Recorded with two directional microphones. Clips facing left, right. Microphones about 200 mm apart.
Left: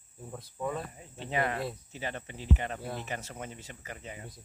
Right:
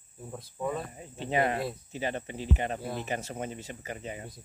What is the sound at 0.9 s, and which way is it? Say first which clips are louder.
Speech: right 4 dB; 20° right (ahead or behind).